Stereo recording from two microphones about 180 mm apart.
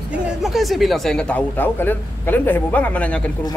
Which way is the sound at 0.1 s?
Centre (ahead or behind).